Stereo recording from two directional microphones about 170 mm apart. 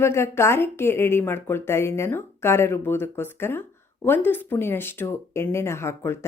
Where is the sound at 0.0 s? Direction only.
15° left (ahead or behind).